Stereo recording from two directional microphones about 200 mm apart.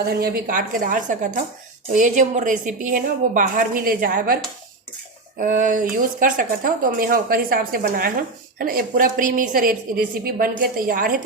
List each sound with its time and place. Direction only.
0.1 s a woman's voice: 45° right (ahead or behind)
5.4 s speech: 40° right (ahead or behind)